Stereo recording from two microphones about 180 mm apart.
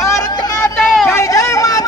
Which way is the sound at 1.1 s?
15° left (ahead or behind).